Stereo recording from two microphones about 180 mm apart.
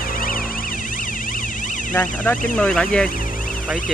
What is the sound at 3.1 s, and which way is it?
Car alarm, 50° left (ahead or behind).